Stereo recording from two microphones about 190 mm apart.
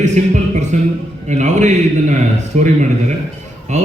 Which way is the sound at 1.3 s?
40° right (ahead or behind).